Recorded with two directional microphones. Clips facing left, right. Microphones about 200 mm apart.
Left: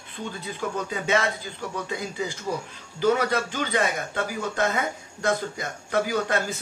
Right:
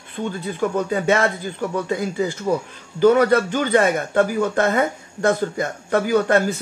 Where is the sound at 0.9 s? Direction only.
50° right (ahead or behind).